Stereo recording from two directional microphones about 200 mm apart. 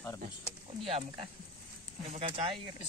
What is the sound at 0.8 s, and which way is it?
Speech, 30° right (ahead or behind).